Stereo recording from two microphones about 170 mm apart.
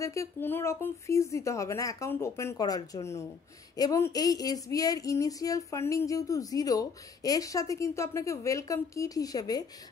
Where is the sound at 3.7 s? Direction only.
20° left (ahead or behind).